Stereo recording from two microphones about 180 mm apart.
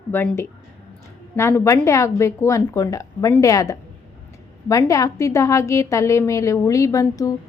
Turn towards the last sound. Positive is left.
turn(degrees=20)  # may be behind; listen again after turning